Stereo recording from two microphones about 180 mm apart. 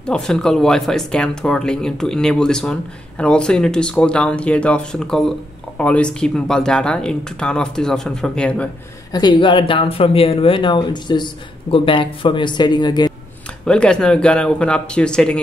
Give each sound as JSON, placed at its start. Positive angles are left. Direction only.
{"t": 0.0, "sound": "speech", "side_deg": 5}
{"t": 9.2, "sound": "speech", "side_deg": 25}
{"t": 13.7, "sound": "speech", "side_deg": 5}